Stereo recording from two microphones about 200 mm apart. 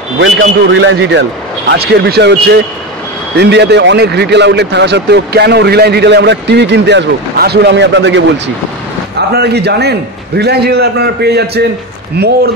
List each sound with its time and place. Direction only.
0.2 s a man's voice: 75° right (ahead or behind)
1.7 s a man's voice: 55° right (ahead or behind)
9.3 s a man's voice: 55° right (ahead or behind)